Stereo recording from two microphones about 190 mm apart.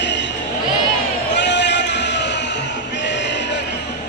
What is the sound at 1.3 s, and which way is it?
Music, 65° left (ahead or behind).